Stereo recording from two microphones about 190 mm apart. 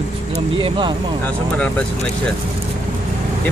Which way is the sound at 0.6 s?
25° right (ahead or behind).